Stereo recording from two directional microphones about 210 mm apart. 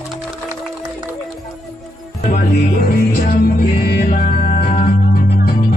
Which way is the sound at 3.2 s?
45° left (ahead or behind).